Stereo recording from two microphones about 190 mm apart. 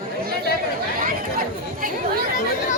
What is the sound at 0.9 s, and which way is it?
Chatter, 45° right (ahead or behind).